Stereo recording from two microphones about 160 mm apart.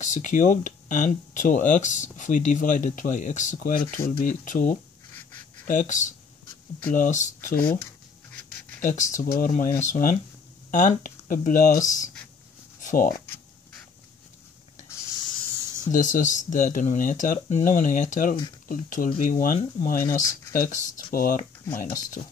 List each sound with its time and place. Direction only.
0.0 s speech: 50° left (ahead or behind)
8.8 s speech: 50° left (ahead or behind)
12.8 s a sound: 60° left (ahead or behind)
15.9 s speech: 55° left (ahead or behind)